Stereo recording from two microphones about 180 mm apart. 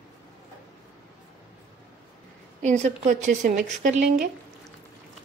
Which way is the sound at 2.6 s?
40° right (ahead or behind).